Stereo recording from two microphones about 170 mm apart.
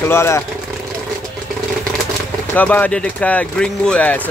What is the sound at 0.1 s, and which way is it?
Speech, 15° left (ahead or behind).